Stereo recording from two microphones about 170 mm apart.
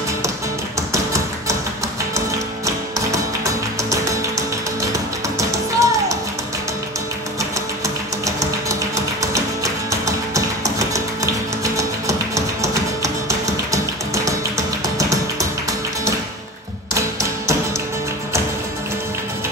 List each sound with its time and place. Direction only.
0.9 s music: 20° right (ahead or behind)
2.6 s music: 20° right (ahead or behind)
8.4 s music: 20° right (ahead or behind)
16.9 s tap: 20° right (ahead or behind)